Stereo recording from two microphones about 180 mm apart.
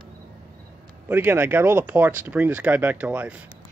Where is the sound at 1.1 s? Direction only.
10° right (ahead or behind).